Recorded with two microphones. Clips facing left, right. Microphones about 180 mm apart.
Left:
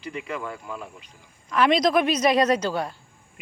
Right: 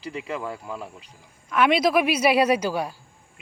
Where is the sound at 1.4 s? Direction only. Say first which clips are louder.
Even; 5° right (ahead or behind).